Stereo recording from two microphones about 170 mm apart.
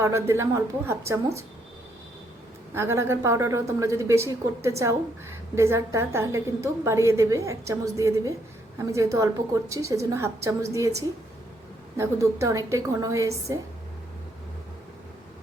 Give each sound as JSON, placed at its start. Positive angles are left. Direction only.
{"t": 0.0, "sound": "a woman's voice", "side_deg": -15}
{"t": 2.7, "sound": "a woman's voice", "side_deg": -15}